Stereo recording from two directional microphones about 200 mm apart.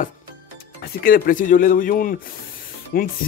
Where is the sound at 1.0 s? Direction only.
45° left (ahead or behind).